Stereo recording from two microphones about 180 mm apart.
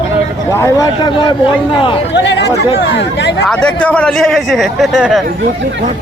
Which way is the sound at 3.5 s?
5° left (ahead or behind).